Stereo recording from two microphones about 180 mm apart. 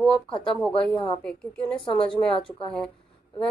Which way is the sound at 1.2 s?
5° left (ahead or behind).